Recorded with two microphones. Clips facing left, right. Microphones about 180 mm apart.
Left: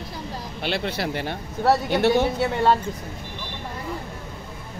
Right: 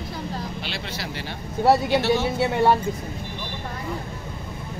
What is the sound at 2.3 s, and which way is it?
Speech, 10° right (ahead or behind).